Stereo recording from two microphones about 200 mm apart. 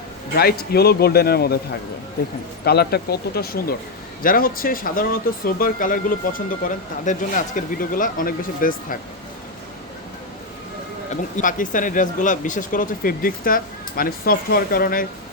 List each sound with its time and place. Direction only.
0.3 s speech: 50° left (ahead or behind)
2.6 s speech: 50° left (ahead or behind)
11.1 s speech: 40° left (ahead or behind)